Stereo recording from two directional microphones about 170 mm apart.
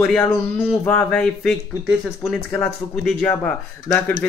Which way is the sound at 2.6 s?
5° left (ahead or behind).